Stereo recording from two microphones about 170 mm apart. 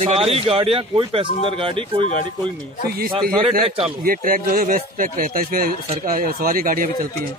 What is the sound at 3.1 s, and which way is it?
Speech, 30° right (ahead or behind).